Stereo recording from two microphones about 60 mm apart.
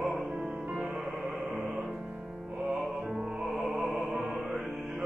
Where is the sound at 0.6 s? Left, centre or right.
Right.